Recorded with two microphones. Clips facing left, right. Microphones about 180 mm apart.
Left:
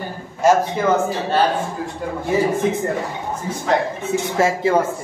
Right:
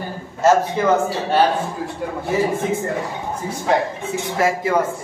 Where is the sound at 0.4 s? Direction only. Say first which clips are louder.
Even; 15° left (ahead or behind).